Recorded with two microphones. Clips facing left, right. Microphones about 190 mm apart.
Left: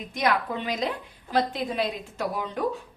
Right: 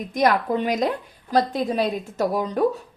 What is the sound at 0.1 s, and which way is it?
A woman's voice, 45° right (ahead or behind).